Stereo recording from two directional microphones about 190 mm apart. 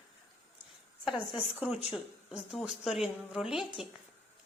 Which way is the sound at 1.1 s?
5° right (ahead or behind).